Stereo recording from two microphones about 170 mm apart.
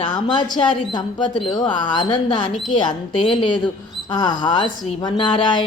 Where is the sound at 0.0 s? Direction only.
25° left (ahead or behind).